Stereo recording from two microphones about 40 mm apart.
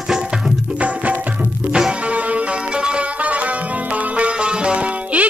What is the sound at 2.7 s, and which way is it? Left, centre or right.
Music, right.